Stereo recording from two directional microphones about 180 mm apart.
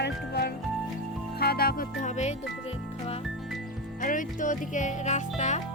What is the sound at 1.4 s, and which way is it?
Music, 55° left (ahead or behind).